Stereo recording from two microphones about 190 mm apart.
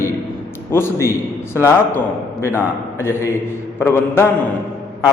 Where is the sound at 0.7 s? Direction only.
15° left (ahead or behind).